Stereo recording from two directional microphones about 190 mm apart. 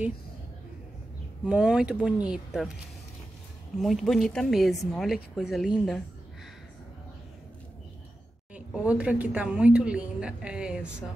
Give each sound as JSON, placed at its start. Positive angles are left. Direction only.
{"t": 1.4, "sound": "a woman's voice", "side_deg": -5}
{"t": 3.8, "sound": "a woman's voice", "side_deg": 0}
{"t": 8.5, "sound": "a woman's voice", "side_deg": -5}